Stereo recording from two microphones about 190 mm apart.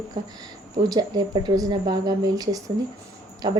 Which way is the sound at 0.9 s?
20° right (ahead or behind).